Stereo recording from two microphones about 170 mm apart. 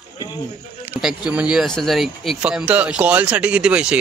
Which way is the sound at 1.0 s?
5° right (ahead or behind).